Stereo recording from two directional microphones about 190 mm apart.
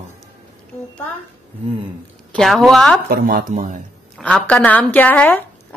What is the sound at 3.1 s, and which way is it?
Speech, 50° right (ahead or behind).